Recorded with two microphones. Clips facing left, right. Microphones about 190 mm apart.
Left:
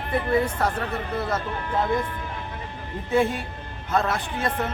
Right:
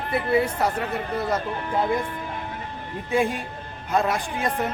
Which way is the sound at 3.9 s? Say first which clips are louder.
Right 1 dB; 15° right (ahead or behind).